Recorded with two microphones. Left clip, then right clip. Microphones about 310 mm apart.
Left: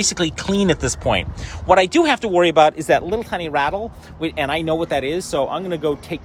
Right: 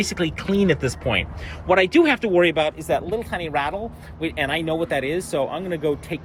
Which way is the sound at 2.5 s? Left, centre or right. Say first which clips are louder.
Left 9 dB; left.